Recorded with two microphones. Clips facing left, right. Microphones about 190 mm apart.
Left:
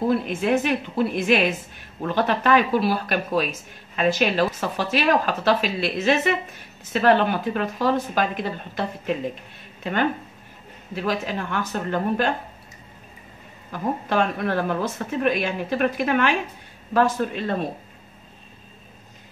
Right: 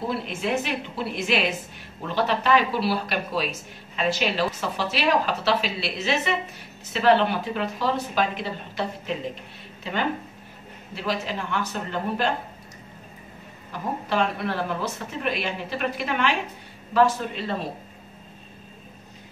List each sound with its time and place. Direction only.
0.1 s speech: 50° left (ahead or behind)
13.7 s speech: 50° left (ahead or behind)